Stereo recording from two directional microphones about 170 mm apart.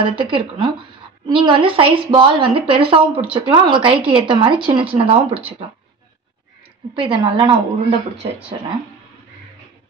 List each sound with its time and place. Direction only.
0.0 s a woman's voice: 30° right (ahead or behind)
7.0 s a woman's voice: 30° right (ahead or behind)